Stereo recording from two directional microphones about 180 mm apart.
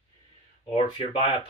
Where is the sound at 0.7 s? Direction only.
30° left (ahead or behind).